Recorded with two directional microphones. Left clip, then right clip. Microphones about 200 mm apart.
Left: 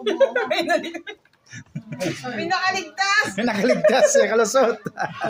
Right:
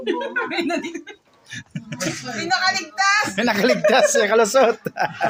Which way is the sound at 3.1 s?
5° right (ahead or behind).